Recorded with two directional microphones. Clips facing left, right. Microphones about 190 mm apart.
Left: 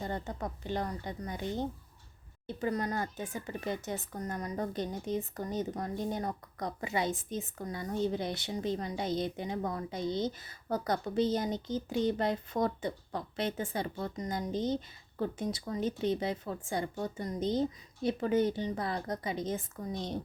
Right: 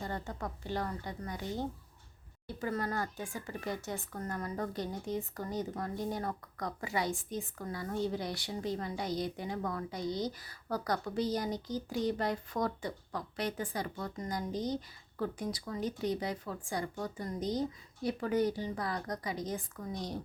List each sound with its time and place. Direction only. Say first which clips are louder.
0.0 s speech: left 2 dB; 20° left (ahead or behind)
2.5 s speech: left 3 dB; 20° left (ahead or behind)